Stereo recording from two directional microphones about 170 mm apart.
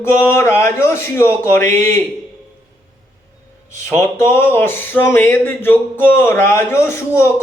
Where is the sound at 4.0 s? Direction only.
15° left (ahead or behind).